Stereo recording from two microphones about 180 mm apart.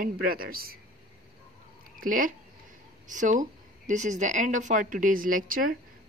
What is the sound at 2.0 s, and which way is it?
Speech, 50° right (ahead or behind).